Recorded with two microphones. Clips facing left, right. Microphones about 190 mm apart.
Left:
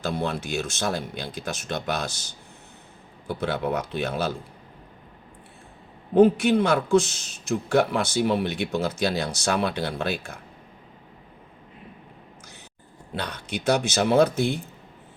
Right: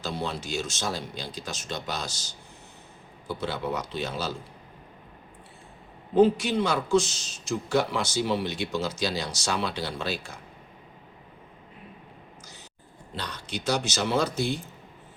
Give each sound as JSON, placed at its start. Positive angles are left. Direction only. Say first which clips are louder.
{"t": 0.0, "sound": "speech", "louder": "left 4 dB", "side_deg": 55}
{"t": 6.1, "sound": "speech", "louder": "left 4 dB", "side_deg": 55}
{"t": 13.1, "sound": "speech", "louder": "left 4 dB", "side_deg": 60}